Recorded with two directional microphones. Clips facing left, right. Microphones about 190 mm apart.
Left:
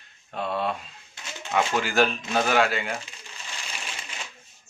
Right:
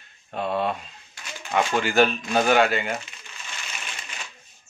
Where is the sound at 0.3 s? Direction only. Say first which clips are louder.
Right 2 dB; centre (ahead or behind).